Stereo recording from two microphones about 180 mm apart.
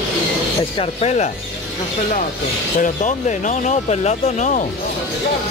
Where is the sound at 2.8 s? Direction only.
40° left (ahead or behind).